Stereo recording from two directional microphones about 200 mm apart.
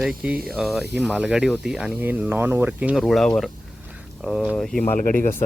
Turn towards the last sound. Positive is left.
turn(degrees=40)  # may be behind; listen again after turning